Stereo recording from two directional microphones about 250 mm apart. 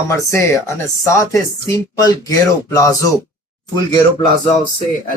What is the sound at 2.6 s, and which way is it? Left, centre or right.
Speech, centre.